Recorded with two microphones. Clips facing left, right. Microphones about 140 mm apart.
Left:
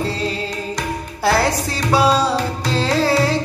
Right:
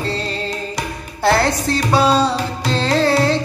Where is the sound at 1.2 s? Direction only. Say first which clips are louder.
Right 2 dB; 10° left (ahead or behind).